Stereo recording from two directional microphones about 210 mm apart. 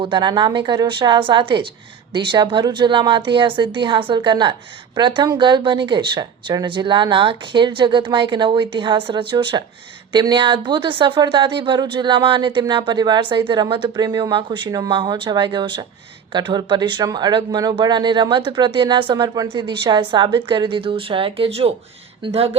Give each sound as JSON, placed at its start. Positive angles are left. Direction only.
{"t": 0.0, "sound": "speech", "side_deg": -20}